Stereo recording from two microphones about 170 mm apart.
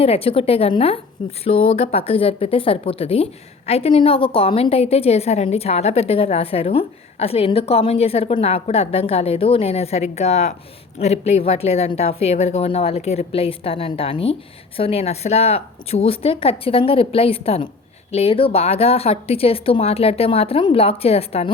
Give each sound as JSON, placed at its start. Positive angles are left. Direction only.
{"t": 0.0, "sound": "a woman's voice", "side_deg": 35}